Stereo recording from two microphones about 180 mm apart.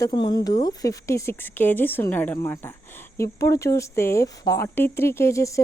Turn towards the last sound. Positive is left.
turn(degrees=15)  # may be behind; listen again after turning